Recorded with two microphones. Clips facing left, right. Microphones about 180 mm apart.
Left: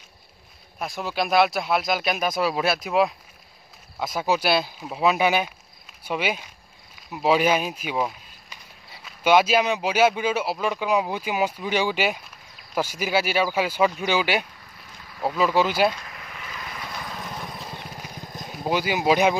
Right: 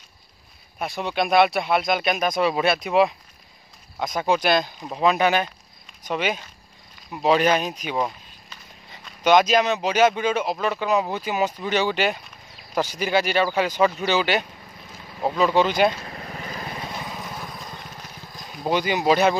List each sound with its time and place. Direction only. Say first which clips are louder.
0.7 s speech: right 2 dB; centre (ahead or behind)
15.0 s insect: right 2 dB; 20° right (ahead or behind)
15.3 s speech: right 2 dB; 5° left (ahead or behind)
15.9 s vehicle: right 4 dB; 30° right (ahead or behind)
17.1 s horse: even; 5° right (ahead or behind); by 18.5 s 20° left (ahead or behind)
18.5 s speech: right 2 dB; 5° left (ahead or behind)